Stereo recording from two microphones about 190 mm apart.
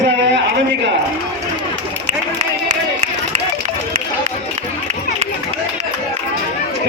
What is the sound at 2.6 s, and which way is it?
Run, 40° right (ahead or behind).